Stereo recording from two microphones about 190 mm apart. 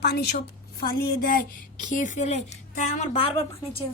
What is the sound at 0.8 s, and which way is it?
Speech, 45° left (ahead or behind).